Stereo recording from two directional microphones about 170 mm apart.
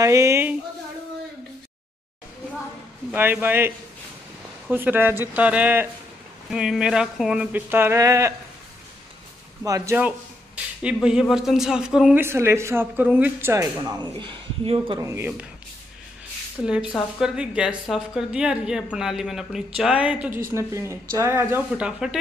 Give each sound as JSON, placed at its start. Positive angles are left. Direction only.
{"t": 0.0, "sound": "speech", "side_deg": -15}
{"t": 3.1, "sound": "a woman's voice", "side_deg": -10}
{"t": 9.6, "sound": "speech", "side_deg": -20}
{"t": 9.9, "sound": "speech", "side_deg": -5}
{"t": 15.0, "sound": "speech", "side_deg": -15}
{"t": 16.6, "sound": "a woman's voice", "side_deg": 0}